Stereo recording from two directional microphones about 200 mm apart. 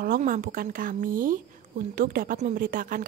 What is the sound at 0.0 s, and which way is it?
A woman's voice, 45° right (ahead or behind).